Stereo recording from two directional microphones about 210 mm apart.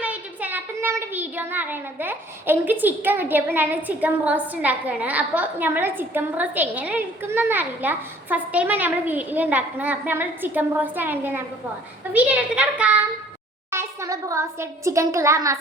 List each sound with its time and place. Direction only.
0.0 s a child's voice: 5° right (ahead or behind)